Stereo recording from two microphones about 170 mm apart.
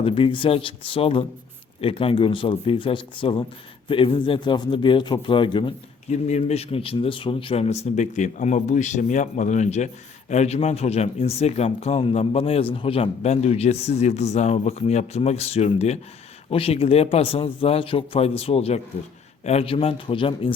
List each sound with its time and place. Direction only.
0.0 s a man's voice: 30° left (ahead or behind)
6.1 s speech: 40° left (ahead or behind)